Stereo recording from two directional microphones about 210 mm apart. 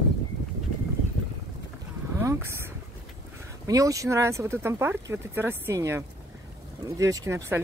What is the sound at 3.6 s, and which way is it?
Speech, 15° right (ahead or behind).